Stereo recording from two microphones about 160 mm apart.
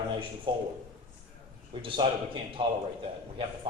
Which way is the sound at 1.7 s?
30° right (ahead or behind).